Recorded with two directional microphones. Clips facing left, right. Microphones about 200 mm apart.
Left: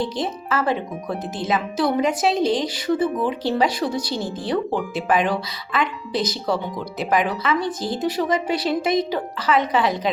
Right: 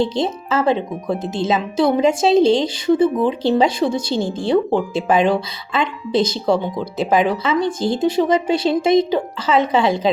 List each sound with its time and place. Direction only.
0.0 s speech: 25° right (ahead or behind)